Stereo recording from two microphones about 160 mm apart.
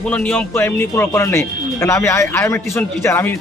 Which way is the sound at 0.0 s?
10° left (ahead or behind).